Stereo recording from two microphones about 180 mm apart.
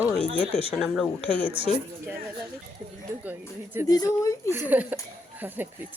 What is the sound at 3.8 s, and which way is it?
Speech, 20° left (ahead or behind).